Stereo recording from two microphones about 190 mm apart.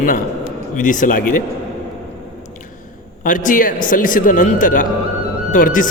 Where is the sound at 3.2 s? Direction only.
45° left (ahead or behind).